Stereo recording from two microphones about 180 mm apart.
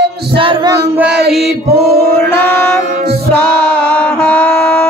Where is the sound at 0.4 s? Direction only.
25° right (ahead or behind).